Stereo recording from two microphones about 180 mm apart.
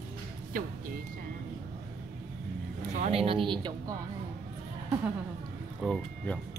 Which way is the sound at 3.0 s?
30° right (ahead or behind).